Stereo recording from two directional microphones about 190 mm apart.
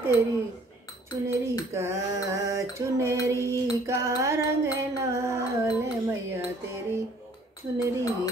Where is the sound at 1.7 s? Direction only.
15° right (ahead or behind).